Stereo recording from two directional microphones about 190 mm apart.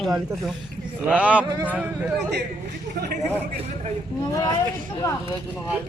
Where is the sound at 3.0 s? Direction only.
55° right (ahead or behind).